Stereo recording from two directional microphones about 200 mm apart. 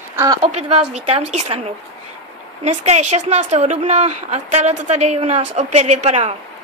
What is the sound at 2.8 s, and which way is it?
A woman's voice, 35° right (ahead or behind).